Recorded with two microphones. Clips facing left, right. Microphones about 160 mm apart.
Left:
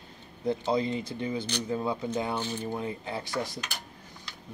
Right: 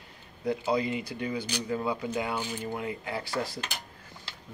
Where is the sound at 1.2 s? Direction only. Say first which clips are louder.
Left 1 dB; 25° left (ahead or behind).